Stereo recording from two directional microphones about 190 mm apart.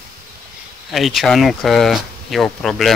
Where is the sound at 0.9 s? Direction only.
Centre (ahead or behind).